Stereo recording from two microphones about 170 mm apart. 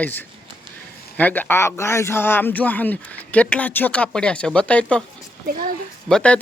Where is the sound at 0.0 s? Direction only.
10° left (ahead or behind).